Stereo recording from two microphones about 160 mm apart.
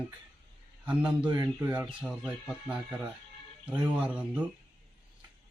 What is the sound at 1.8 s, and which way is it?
Speech, 5° right (ahead or behind).